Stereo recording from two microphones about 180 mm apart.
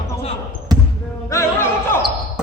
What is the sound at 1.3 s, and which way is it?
Music, 15° left (ahead or behind).